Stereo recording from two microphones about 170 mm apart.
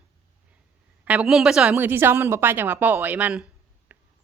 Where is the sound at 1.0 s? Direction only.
10° right (ahead or behind).